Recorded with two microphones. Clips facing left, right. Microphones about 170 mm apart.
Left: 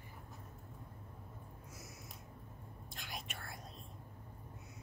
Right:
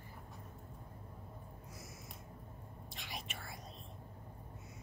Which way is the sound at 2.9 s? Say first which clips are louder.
Even; centre (ahead or behind).